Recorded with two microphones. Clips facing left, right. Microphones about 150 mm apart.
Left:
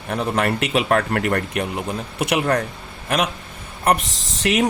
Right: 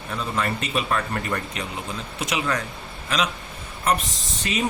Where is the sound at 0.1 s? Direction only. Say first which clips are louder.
Left 6 dB; 65° left (ahead or behind).